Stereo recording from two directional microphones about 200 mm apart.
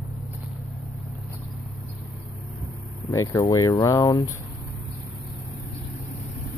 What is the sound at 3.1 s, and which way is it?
Speech, 15° left (ahead or behind).